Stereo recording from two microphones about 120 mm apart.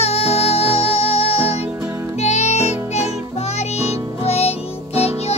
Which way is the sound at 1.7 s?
10° right (ahead or behind).